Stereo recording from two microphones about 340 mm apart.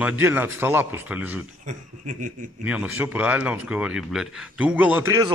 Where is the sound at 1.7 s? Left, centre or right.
Right.